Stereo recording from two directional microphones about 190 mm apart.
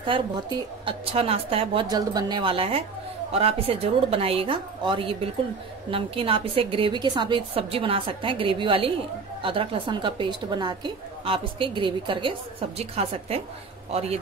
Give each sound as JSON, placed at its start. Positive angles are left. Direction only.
{"t": 0.0, "sound": "a woman's voice", "side_deg": -25}